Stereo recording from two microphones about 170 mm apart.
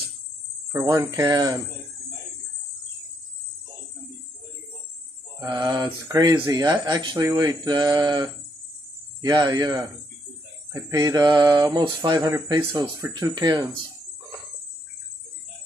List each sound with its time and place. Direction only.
0.8 s speech: 20° right (ahead or behind)
5.4 s speech: 25° right (ahead or behind)